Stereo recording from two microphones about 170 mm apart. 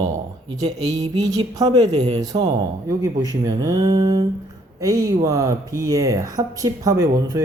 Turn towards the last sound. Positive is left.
turn(degrees=-15)  # may be behind; listen again after turning